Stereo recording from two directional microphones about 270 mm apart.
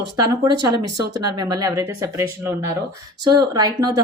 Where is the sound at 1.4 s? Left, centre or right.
Centre.